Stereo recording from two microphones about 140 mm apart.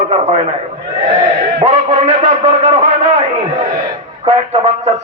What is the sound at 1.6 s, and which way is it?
A man's voice, 55° right (ahead or behind).